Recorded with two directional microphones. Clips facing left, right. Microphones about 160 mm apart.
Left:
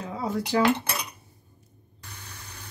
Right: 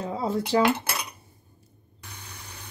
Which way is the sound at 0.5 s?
25° right (ahead or behind).